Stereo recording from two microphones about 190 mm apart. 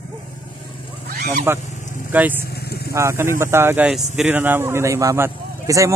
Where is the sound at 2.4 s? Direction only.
55° left (ahead or behind).